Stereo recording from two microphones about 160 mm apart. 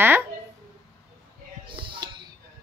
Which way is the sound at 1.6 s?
30° right (ahead or behind).